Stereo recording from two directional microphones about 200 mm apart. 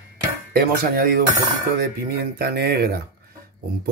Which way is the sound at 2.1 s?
50° right (ahead or behind).